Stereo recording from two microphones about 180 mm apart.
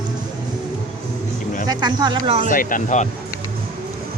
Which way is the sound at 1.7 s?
25° right (ahead or behind).